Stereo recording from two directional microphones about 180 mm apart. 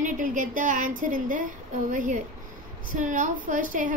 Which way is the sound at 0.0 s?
45° right (ahead or behind).